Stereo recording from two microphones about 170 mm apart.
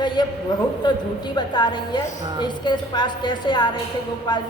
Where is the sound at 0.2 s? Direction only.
25° left (ahead or behind).